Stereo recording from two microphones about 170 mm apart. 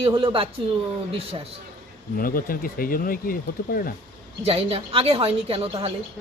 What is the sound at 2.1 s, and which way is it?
Speech, 55° left (ahead or behind).